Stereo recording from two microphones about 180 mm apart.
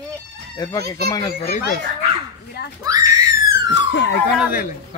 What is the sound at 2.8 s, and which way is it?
Screaming, 20° right (ahead or behind).